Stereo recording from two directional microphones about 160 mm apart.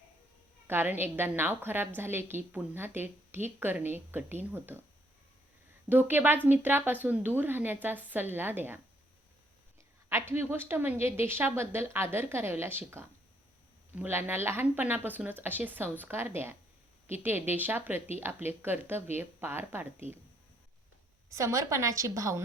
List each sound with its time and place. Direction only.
0.7 s a woman's voice: 15° right (ahead or behind)
5.9 s a woman's voice: 15° right (ahead or behind)
10.1 s a woman's voice: 15° right (ahead or behind)
21.3 s a woman's voice: 20° right (ahead or behind)